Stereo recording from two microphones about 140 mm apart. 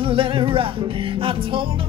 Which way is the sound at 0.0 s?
40° right (ahead or behind).